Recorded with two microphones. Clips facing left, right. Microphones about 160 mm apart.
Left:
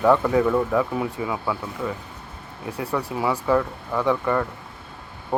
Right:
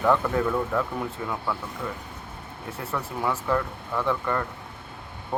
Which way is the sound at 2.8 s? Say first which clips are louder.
Left 5 dB; 15° left (ahead or behind).